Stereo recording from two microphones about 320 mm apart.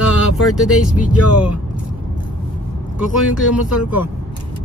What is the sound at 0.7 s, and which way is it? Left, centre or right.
Speech, left.